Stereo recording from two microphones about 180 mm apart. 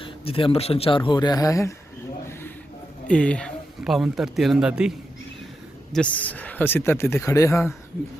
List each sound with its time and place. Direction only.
0.0 s speech: 30° left (ahead or behind)
3.1 s speech: 5° left (ahead or behind)
5.9 s speech: 5° left (ahead or behind)